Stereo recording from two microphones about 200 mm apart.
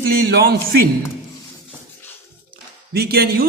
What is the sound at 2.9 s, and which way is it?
Speech, 50° right (ahead or behind).